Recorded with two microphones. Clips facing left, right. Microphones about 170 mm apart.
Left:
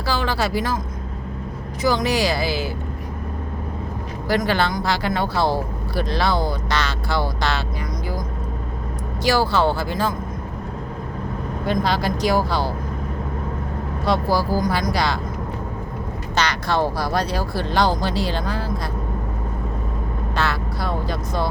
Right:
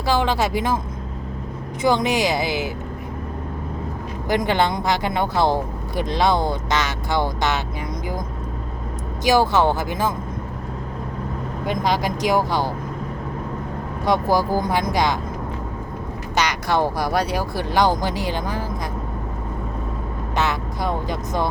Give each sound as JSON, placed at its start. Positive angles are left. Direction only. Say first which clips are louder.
{"t": 0.0, "sound": "speech", "louder": "right 3 dB", "side_deg": -20}
{"t": 1.8, "sound": "speech", "louder": "right 1 dB", "side_deg": -25}
{"t": 4.3, "sound": "speech", "louder": "right 1 dB", "side_deg": -20}
{"t": 9.2, "sound": "speech", "louder": "right 2 dB", "side_deg": -20}
{"t": 11.6, "sound": "speech", "louder": "even", "side_deg": -15}
{"t": 14.0, "sound": "speech", "louder": "right 1 dB", "side_deg": -15}
{"t": 16.3, "sound": "speech", "louder": "right 1 dB", "side_deg": -15}
{"t": 20.3, "sound": "speech", "louder": "right 2 dB", "side_deg": -20}